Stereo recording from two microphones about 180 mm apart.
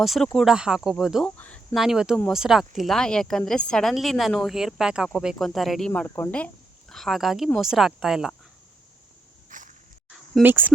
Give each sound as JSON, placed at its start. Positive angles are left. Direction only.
{"t": 0.0, "sound": "a woman's voice", "side_deg": 0}
{"t": 9.5, "sound": "a sound", "side_deg": -45}
{"t": 10.4, "sound": "speech", "side_deg": -10}